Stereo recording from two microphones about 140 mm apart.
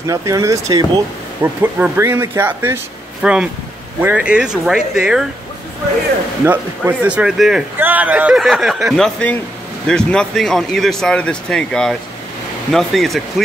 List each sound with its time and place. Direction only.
0.0 s speech: 25° right (ahead or behind)
3.2 s speech: 5° right (ahead or behind)
6.4 s speech: 15° right (ahead or behind)